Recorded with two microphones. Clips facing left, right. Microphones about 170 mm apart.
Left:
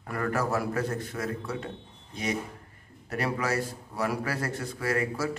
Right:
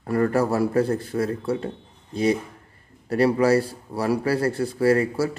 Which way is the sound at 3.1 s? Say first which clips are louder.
Right 11 dB; 30° right (ahead or behind).